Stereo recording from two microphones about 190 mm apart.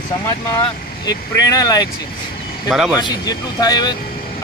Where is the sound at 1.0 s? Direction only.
20° left (ahead or behind).